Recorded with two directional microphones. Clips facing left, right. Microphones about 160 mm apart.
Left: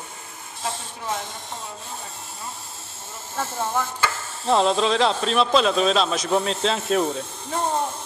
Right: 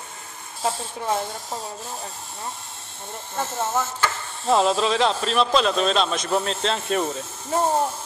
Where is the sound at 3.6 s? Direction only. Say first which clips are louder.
Right 1 dB; 10° right (ahead or behind).